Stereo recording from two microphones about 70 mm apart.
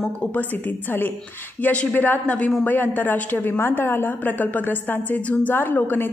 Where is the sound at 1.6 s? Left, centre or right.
Left.